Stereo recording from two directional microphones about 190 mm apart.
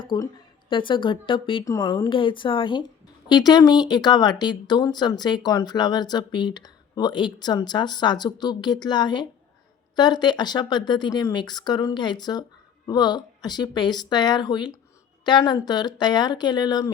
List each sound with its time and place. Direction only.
0.1 s speech: 25° left (ahead or behind)